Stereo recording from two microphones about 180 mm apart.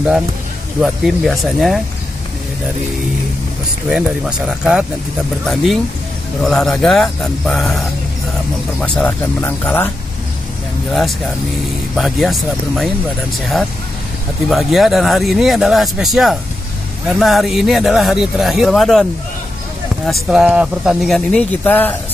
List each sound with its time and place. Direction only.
0.7 s speech: centre (ahead or behind)
3.9 s speech: 5° right (ahead or behind)
8.8 s speech: 10° left (ahead or behind)
10.9 s speech: centre (ahead or behind)
14.5 s speech: centre (ahead or behind)
20.1 s speech: centre (ahead or behind)